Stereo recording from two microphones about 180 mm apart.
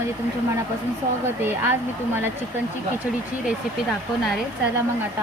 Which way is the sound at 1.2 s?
10° right (ahead or behind).